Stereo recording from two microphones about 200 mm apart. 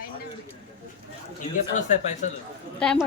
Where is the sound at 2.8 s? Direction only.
5° left (ahead or behind).